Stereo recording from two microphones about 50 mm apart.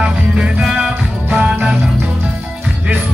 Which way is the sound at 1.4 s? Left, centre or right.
Right.